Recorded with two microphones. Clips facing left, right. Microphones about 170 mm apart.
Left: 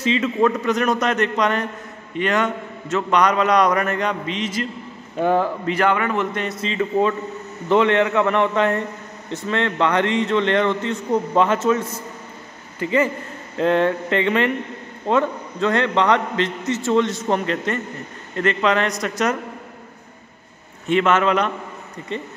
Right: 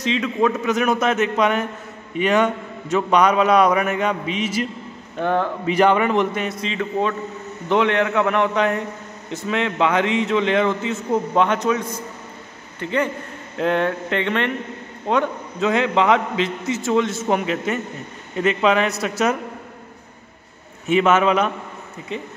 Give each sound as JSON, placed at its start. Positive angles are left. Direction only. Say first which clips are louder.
{"t": 0.0, "sound": "a man's voice", "louder": "left 1 dB", "side_deg": 0}
{"t": 5.2, "sound": "speech", "louder": "left 2 dB", "side_deg": 5}
{"t": 5.7, "sound": "a man's voice", "louder": "right 6 dB", "side_deg": -15}
{"t": 6.3, "sound": "a man's voice", "louder": "left 1 dB", "side_deg": 0}
{"t": 20.8, "sound": "a man's voice", "louder": "right 1 dB", "side_deg": -10}